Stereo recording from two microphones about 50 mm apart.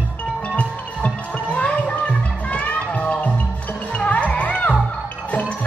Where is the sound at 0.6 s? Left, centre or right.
Left.